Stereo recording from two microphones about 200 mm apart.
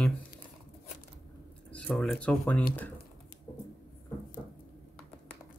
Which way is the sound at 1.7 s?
5° left (ahead or behind).